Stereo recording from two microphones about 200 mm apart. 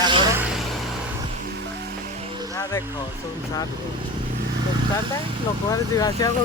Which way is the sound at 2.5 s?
15° left (ahead or behind).